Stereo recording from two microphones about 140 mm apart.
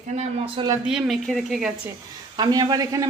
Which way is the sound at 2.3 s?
30° right (ahead or behind).